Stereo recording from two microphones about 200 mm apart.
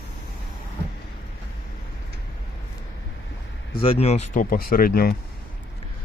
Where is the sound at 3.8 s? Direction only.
30° left (ahead or behind); by 5.1 s 45° left (ahead or behind).